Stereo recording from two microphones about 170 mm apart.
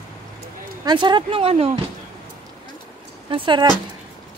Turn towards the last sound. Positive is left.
turn(degrees=-30)  # may be behind; listen again after turning